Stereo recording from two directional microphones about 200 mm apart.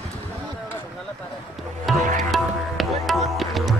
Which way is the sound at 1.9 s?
Centre (ahead or behind).